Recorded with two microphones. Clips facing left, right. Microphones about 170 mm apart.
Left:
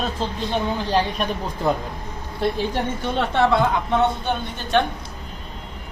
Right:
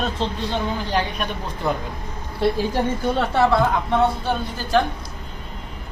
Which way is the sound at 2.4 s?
5° right (ahead or behind).